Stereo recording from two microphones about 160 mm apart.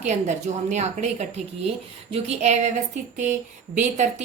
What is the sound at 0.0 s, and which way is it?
A woman's voice, 45° right (ahead or behind).